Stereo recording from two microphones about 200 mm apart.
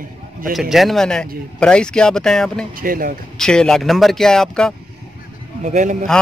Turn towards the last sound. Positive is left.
turn(degrees=-40)  # may be behind; listen again after turning